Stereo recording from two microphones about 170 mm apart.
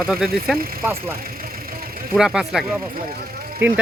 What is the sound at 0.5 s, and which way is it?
Speech, 60° right (ahead or behind).